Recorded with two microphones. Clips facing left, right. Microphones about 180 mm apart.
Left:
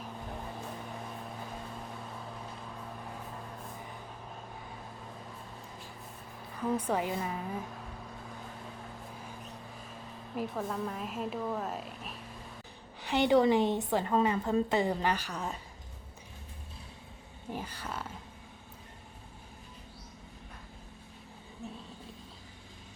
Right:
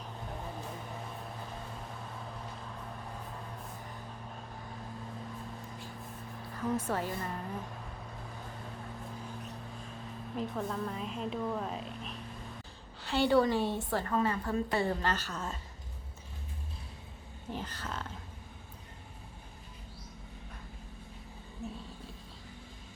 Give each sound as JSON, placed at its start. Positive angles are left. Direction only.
{"t": 6.7, "sound": "a woman's voice", "side_deg": 15}
{"t": 10.3, "sound": "a woman's voice", "side_deg": 5}
{"t": 13.0, "sound": "a woman's voice", "side_deg": 15}
{"t": 17.5, "sound": "a woman's voice", "side_deg": 10}